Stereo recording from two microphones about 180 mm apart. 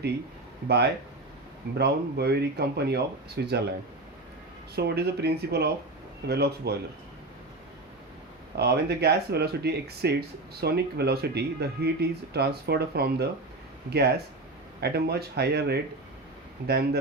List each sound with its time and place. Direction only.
1.8 s speech: 60° right (ahead or behind)
4.7 s speech: 65° right (ahead or behind)
8.5 s speech: 65° right (ahead or behind)